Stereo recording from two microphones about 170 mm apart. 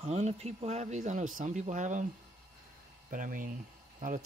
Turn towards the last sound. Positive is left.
turn(degrees=-50)  # may be behind; listen again after turning